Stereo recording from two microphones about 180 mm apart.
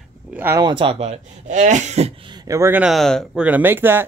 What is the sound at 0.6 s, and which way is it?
Speech, 30° right (ahead or behind).